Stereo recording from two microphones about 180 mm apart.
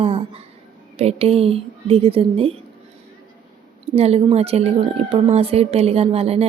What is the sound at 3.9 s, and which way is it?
A woman's voice, 35° right (ahead or behind).